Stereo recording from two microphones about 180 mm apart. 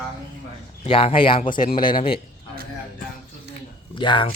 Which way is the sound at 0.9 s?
30° left (ahead or behind).